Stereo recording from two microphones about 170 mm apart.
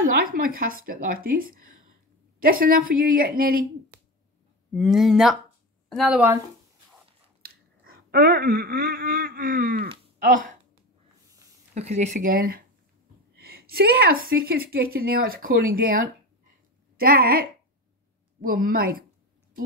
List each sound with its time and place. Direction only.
0.0 s a woman's voice: 60° right (ahead or behind)
4.7 s speech: centre (ahead or behind)
7.4 s speech: 60° right (ahead or behind)
11.7 s a woman's voice: 40° right (ahead or behind); by 19.0 s 60° right (ahead or behind)